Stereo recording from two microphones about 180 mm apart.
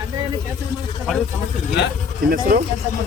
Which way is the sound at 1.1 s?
Centre (ahead or behind).